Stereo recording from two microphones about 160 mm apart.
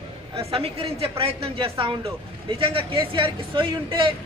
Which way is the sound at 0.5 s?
35° right (ahead or behind).